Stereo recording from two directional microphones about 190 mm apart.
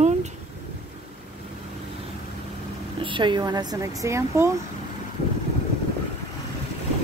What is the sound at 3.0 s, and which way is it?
Speech, 25° right (ahead or behind).